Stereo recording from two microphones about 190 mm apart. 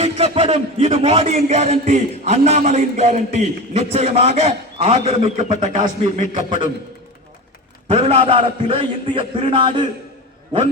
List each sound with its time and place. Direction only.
0.0 s a man's voice: 30° right (ahead or behind)
6.3 s a man's voice: 25° right (ahead or behind)
7.9 s a man's voice: 30° right (ahead or behind)